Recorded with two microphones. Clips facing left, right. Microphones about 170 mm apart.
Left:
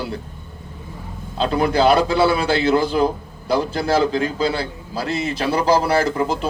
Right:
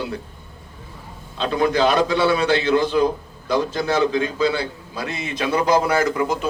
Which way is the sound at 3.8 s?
35° left (ahead or behind).